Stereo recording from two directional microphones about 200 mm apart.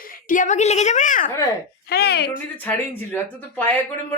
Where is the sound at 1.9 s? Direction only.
50° left (ahead or behind).